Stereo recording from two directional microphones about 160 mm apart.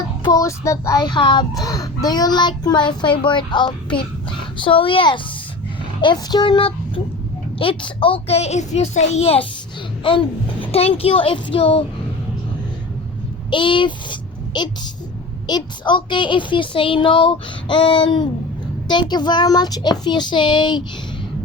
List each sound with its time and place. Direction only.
0.2 s a woman's voice: 25° left (ahead or behind)
13.5 s a child's voice: 30° left (ahead or behind)